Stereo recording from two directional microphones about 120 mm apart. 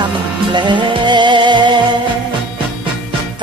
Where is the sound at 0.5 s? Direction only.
40° right (ahead or behind).